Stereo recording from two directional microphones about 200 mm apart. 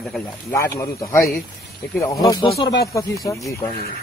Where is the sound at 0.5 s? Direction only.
15° left (ahead or behind).